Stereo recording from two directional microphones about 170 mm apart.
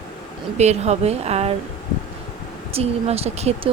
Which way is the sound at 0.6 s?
40° right (ahead or behind).